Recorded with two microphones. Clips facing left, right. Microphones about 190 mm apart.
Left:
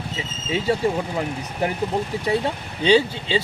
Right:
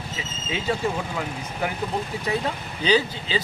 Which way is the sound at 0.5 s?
35° left (ahead or behind).